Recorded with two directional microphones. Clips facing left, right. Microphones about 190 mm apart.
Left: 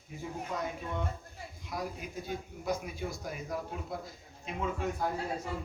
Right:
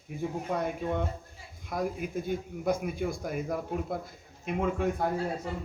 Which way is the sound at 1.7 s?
50° right (ahead or behind).